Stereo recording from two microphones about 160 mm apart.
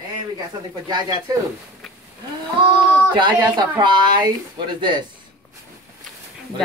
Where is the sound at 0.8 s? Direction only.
25° right (ahead or behind).